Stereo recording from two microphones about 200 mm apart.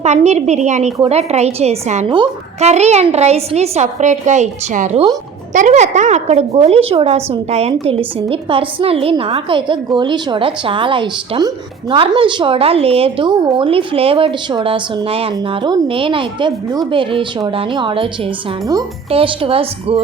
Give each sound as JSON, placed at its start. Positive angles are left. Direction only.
{"t": 0.0, "sound": "a woman's voice", "side_deg": -35}